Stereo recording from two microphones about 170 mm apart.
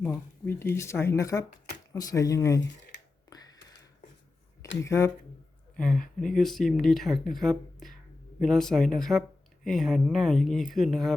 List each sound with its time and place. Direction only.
0.0 s speech: 10° left (ahead or behind)
4.8 s speech: 15° left (ahead or behind)
5.7 s speech: 5° left (ahead or behind)